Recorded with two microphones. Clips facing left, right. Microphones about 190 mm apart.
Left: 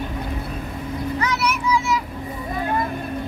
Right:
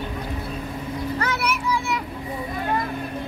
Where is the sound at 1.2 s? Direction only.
55° right (ahead or behind).